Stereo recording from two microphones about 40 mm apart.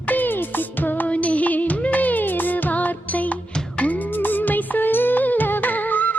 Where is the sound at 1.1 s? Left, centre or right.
Left.